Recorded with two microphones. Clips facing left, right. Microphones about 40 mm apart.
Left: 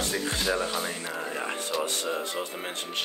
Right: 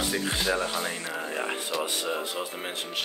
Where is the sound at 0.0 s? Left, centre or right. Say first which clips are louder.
Right 1 dB; centre.